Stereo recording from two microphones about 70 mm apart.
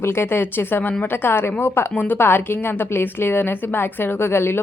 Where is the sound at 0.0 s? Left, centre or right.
Left.